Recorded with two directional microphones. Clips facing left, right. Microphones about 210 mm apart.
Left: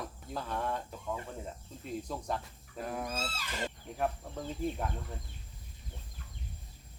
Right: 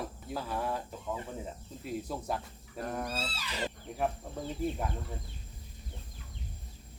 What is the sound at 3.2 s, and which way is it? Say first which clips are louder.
Speech: right 1 dB; 50° left (ahead or behind).